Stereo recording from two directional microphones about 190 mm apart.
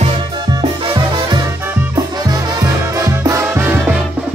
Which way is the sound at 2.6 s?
15° right (ahead or behind).